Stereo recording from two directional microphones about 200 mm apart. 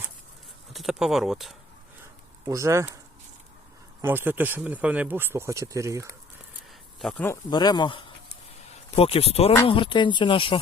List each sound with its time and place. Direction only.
0.7 s speech: centre (ahead or behind)
2.5 s speech: 15° right (ahead or behind)
4.0 s speech: 10° right (ahead or behind)
7.0 s speech: 10° left (ahead or behind)
7.5 s speech: 20° left (ahead or behind)